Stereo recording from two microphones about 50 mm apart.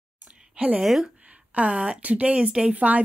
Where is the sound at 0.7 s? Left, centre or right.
Centre.